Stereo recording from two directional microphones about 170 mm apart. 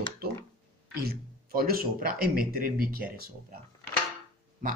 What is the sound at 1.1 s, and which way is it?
A man's voice, 60° right (ahead or behind).